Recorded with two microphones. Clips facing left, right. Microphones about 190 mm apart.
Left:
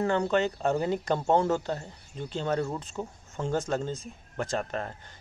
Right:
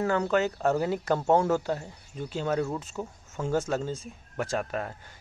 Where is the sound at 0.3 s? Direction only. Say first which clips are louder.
Right 1 dB; 5° right (ahead or behind).